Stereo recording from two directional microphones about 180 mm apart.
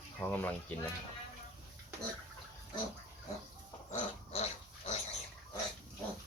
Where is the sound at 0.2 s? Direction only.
10° left (ahead or behind).